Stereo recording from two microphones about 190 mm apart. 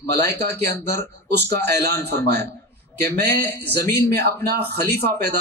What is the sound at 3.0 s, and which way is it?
Speech, 60° right (ahead or behind).